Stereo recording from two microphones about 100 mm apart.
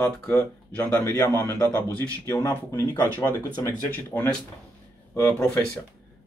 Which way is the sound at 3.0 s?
20° left (ahead or behind).